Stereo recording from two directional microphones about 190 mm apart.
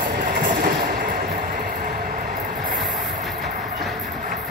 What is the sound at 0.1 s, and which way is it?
Train, 50° right (ahead or behind).